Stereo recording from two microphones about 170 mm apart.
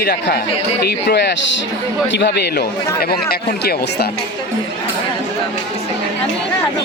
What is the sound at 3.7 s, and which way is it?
Speech, 70° left (ahead or behind).